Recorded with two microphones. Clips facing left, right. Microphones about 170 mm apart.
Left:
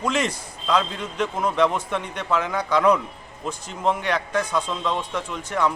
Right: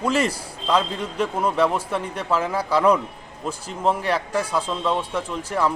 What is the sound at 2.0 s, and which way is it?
Speech, 30° right (ahead or behind).